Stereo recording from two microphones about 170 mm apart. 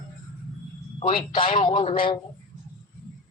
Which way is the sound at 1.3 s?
35° left (ahead or behind).